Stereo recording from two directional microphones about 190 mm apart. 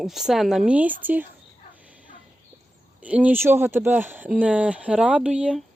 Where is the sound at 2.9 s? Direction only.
5° right (ahead or behind).